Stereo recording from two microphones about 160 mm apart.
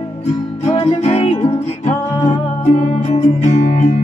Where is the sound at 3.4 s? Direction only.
45° left (ahead or behind).